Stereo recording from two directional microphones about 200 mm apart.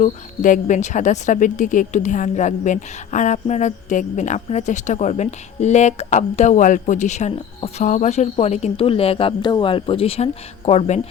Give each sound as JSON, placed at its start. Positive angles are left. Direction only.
{"t": 0.0, "sound": "speech", "side_deg": 40}